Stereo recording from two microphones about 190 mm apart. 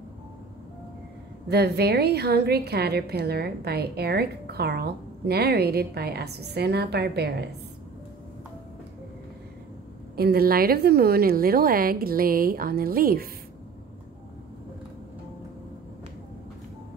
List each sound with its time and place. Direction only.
1.5 s a woman's voice: 60° right (ahead or behind)
10.1 s a woman's voice: 55° right (ahead or behind)